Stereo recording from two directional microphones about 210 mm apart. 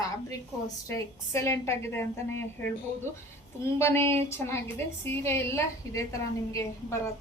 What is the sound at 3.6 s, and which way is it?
A woman's voice, 10° left (ahead or behind).